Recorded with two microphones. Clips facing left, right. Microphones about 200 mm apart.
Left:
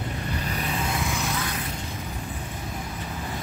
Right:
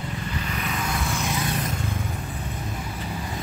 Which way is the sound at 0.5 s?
30° left (ahead or behind).